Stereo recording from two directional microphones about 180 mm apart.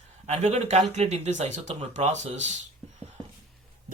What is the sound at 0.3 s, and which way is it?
Speech, 35° right (ahead or behind).